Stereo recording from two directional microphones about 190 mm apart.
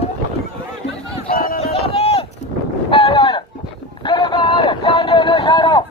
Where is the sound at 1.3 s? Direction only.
50° left (ahead or behind).